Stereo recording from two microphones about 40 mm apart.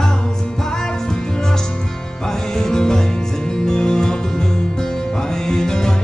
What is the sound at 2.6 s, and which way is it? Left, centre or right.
Music, centre.